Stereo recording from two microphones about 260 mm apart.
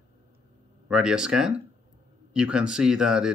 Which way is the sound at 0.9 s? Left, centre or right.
Centre.